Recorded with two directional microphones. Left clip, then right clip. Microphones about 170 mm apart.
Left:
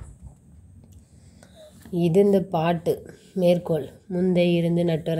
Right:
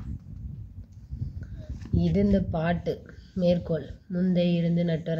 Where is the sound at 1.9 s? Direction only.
30° left (ahead or behind).